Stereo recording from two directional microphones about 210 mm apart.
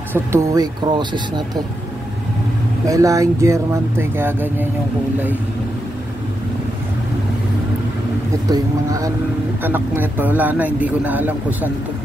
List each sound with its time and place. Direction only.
0.1 s speech: 15° right (ahead or behind)
2.9 s a man's voice: 15° right (ahead or behind)
8.5 s a man's voice: 15° right (ahead or behind)